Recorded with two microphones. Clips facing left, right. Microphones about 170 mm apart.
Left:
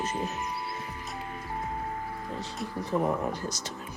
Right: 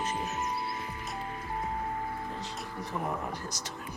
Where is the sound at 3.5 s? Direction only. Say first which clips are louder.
Left 3 dB; 25° left (ahead or behind).